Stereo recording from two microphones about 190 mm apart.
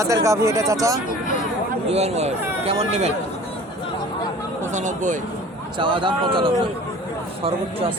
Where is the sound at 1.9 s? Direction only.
35° right (ahead or behind).